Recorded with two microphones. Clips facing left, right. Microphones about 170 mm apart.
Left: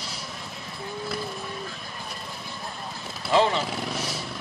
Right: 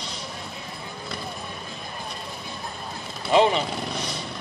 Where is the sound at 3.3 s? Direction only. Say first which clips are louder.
Right 3 dB; 20° right (ahead or behind).